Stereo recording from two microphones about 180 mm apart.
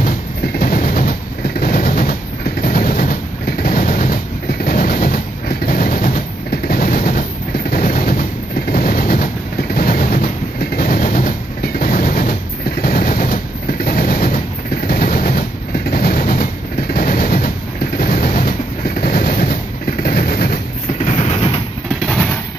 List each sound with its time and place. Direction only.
0.6 s train: 55° left (ahead or behind)
1.6 s vehicle: 55° left (ahead or behind)
2.6 s train: 55° left (ahead or behind)
3.6 s vehicle: 50° left (ahead or behind)
4.6 s train: 55° left (ahead or behind)
7.7 s a sound: 55° left (ahead or behind)
8.7 s train: 55° left (ahead or behind)
12.8 s vehicle: 55° left (ahead or behind)
13.8 s train: 55° left (ahead or behind)
17.9 s vehicle: 55° left (ahead or behind)
18.9 s train: 55° left (ahead or behind)
21.0 s vehicle: 40° left (ahead or behind)
22.0 s vehicle: 5° left (ahead or behind)